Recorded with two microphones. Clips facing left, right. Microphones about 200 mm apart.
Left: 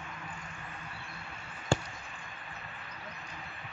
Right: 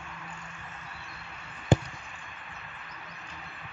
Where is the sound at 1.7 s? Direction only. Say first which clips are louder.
Right 5 dB; 20° right (ahead or behind).